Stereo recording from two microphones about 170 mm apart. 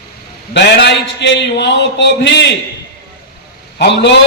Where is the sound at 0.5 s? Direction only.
90° left.